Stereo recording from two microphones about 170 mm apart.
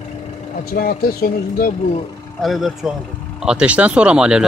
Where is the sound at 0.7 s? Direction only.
60° left (ahead or behind).